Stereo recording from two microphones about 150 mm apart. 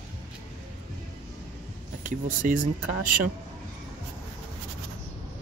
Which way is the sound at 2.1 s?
60° right (ahead or behind).